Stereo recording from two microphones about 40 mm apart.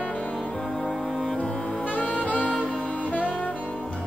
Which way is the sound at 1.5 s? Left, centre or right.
Left.